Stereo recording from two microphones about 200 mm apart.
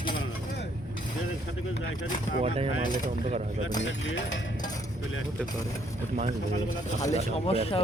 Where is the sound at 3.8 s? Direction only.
65° left (ahead or behind).